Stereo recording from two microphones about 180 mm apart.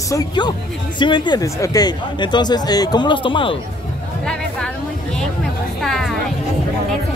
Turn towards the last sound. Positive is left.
turn(degrees=0)  # may be behind; listen again after turning